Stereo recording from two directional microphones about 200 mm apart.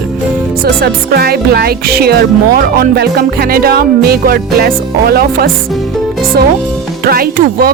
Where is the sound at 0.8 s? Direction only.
50° right (ahead or behind).